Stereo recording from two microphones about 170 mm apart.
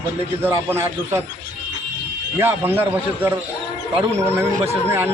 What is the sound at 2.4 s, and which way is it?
Speech, 10° right (ahead or behind).